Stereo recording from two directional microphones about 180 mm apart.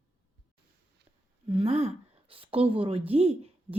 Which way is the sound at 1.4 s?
35° right (ahead or behind).